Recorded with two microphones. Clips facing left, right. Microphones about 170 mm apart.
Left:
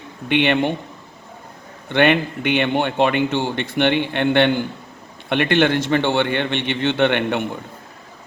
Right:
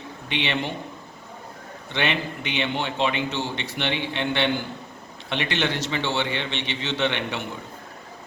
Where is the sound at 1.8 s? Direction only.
55° left (ahead or behind).